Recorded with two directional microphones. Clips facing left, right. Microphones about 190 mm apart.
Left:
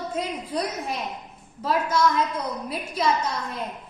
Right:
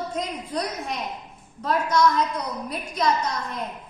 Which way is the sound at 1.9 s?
25° left (ahead or behind).